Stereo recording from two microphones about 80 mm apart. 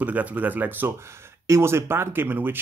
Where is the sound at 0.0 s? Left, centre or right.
Centre.